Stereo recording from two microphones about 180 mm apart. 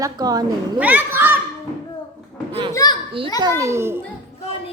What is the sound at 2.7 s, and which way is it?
Speech, 20° left (ahead or behind).